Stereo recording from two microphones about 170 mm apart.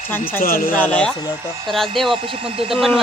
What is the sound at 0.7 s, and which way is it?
Speech, 10° left (ahead or behind).